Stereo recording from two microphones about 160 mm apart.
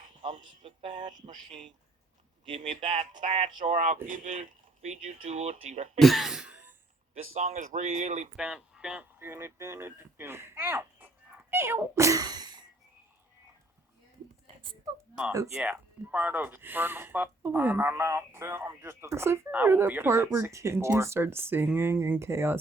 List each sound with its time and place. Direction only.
0.2 s speech: 30° right (ahead or behind)
2.5 s speech: 40° right (ahead or behind)
6.0 s a sound: centre (ahead or behind)
7.1 s speech: 45° right (ahead or behind)
8.4 s speech: 5° right (ahead or behind); by 12.6 s 25° right (ahead or behind)
14.4 s a sound: 35° right (ahead or behind)
15.3 s speech: 20° right (ahead or behind)